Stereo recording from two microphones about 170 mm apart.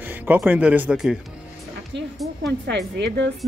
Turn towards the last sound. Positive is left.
turn(degrees=-90)